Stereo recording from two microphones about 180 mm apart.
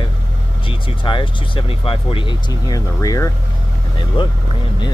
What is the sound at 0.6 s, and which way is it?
Speech, 30° left (ahead or behind).